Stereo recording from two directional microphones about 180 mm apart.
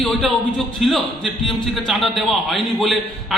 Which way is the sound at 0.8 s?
Centre (ahead or behind).